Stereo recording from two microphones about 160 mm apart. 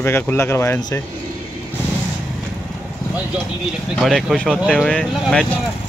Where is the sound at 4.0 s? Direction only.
5° left (ahead or behind).